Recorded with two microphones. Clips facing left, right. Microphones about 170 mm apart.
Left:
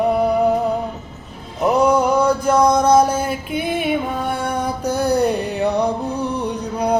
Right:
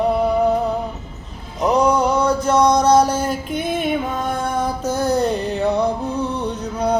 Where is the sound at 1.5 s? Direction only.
5° left (ahead or behind).